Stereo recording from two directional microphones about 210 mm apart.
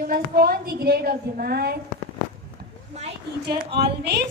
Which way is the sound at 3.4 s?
50° right (ahead or behind).